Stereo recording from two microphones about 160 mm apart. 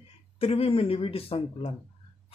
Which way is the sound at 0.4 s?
35° left (ahead or behind).